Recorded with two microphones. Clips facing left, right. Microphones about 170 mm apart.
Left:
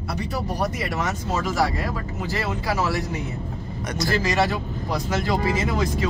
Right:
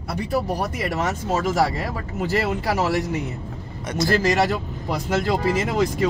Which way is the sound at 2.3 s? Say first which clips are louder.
Right 3 dB; 65° right (ahead or behind).